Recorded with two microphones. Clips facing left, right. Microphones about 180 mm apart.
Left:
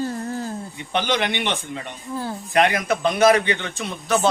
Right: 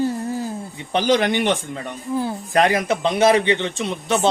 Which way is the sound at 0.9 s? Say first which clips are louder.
Right 5 dB; 35° right (ahead or behind).